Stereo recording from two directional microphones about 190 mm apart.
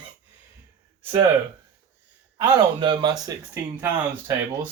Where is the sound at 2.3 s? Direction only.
15° right (ahead or behind).